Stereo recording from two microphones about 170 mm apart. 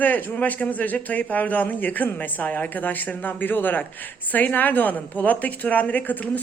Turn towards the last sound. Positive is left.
turn(degrees=10)  # may be behind; listen again after turning